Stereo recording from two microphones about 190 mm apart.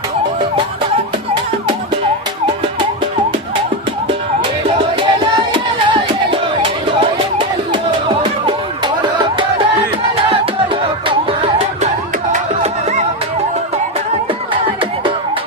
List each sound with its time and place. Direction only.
4.9 s music: 25° right (ahead or behind)
10.3 s music: 30° right (ahead or behind)